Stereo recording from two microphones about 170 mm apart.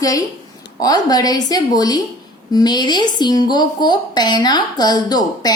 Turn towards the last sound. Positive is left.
turn(degrees=25)  # may be behind; listen again after turning